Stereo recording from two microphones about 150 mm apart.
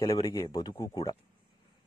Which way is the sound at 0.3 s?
25° left (ahead or behind).